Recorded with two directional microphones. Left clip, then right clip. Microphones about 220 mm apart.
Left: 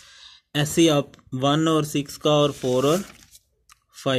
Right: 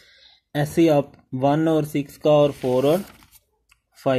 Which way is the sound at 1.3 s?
40° left (ahead or behind).